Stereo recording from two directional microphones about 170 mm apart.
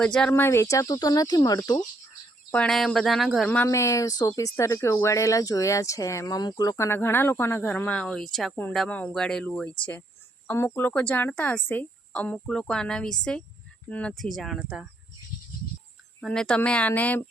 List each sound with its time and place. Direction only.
0.0 s speech: 5° left (ahead or behind)
2.5 s speech: 5° left (ahead or behind)
16.2 s speech: 5° left (ahead or behind)